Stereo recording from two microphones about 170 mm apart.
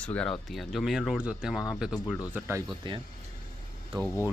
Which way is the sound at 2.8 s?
30° right (ahead or behind).